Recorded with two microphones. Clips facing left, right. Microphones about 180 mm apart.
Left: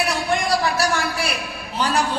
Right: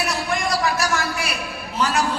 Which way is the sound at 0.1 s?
35° left (ahead or behind).